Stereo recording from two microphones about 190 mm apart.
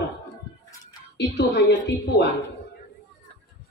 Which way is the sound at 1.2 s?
65° left (ahead or behind).